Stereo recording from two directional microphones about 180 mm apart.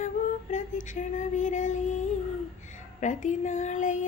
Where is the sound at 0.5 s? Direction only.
45° left (ahead or behind).